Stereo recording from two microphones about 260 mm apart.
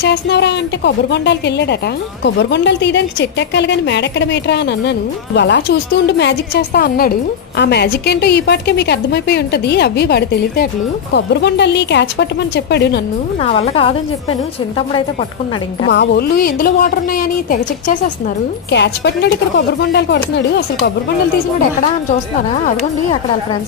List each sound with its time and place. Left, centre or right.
0.0 s a woman's voice: left
13.4 s speech: left
15.9 s a woman's voice: left